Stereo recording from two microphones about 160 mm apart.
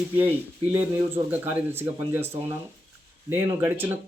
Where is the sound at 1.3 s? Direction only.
10° right (ahead or behind).